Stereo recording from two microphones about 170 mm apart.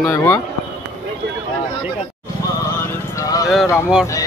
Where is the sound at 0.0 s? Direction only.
15° left (ahead or behind).